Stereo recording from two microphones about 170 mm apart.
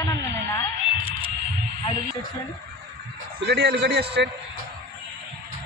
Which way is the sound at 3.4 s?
90° right.